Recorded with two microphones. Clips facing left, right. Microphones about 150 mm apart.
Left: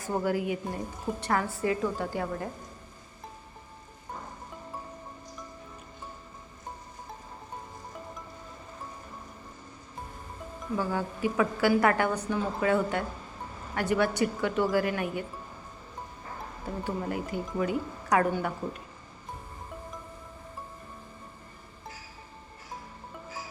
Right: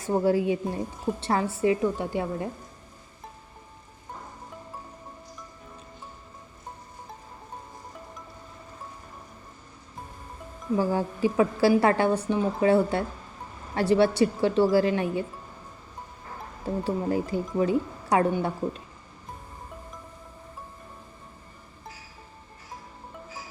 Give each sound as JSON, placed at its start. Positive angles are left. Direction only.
{"t": 0.1, "sound": "a woman's voice", "side_deg": -25}
{"t": 10.8, "sound": "a woman's voice", "side_deg": -35}
{"t": 16.8, "sound": "speech", "side_deg": -35}